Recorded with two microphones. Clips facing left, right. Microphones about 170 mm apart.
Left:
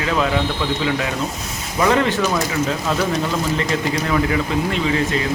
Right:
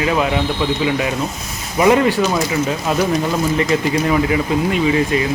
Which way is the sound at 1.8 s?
15° right (ahead or behind).